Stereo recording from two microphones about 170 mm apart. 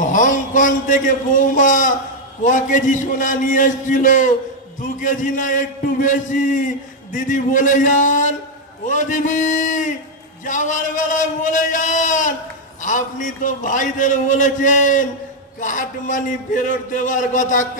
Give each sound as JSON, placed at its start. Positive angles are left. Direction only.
{"t": 0.0, "sound": "a man's voice", "side_deg": 50}